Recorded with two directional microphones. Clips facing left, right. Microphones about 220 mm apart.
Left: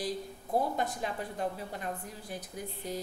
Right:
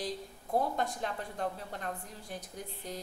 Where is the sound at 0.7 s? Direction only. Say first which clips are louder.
Left 1 dB; 5° left (ahead or behind).